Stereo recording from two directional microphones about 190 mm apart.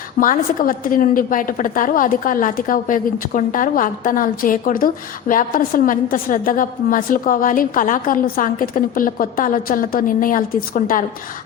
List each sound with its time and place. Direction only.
0.2 s a woman's voice: 45° left (ahead or behind)